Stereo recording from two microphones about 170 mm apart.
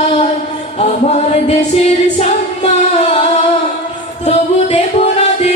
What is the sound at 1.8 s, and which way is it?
Female singing, 40° left (ahead or behind).